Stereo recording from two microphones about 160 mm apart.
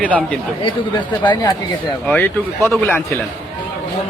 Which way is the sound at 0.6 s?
30° left (ahead or behind).